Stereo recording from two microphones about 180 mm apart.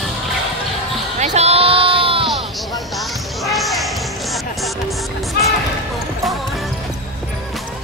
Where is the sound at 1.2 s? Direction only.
35° right (ahead or behind).